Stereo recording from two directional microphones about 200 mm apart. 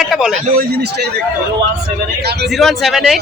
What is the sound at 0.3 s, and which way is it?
Speech, 40° right (ahead or behind).